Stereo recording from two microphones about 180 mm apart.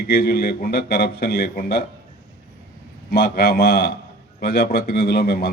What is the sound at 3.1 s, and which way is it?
A man's voice, 60° left (ahead or behind).